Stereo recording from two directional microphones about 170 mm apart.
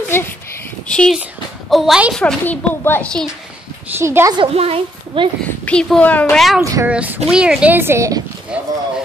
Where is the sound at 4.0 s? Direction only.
15° right (ahead or behind).